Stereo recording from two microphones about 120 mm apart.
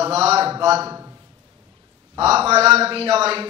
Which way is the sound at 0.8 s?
25° right (ahead or behind).